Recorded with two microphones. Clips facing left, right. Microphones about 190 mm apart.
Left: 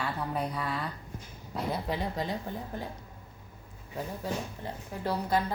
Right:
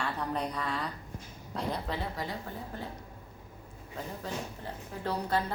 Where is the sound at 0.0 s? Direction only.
5° left (ahead or behind).